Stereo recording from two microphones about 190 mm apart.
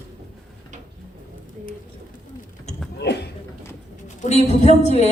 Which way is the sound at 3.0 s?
60° left (ahead or behind).